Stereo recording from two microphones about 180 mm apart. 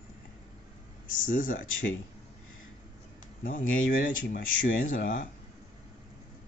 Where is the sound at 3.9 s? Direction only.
50° left (ahead or behind).